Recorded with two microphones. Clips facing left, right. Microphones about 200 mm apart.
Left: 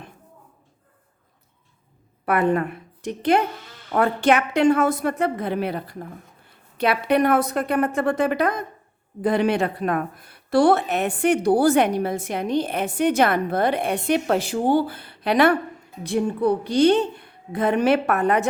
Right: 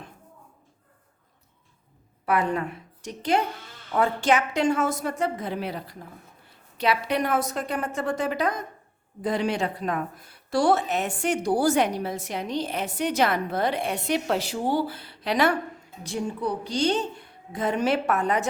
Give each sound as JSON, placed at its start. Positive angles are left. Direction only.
{"t": 2.2, "sound": "a woman's voice", "side_deg": 55}